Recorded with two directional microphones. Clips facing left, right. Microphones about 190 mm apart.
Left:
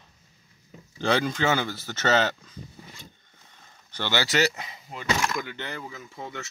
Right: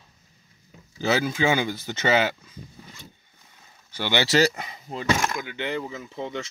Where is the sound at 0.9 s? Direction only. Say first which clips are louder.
Right 1 dB; 5° right (ahead or behind).